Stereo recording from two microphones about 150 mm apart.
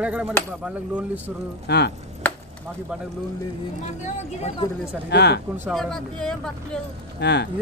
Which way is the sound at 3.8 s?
50° left (ahead or behind).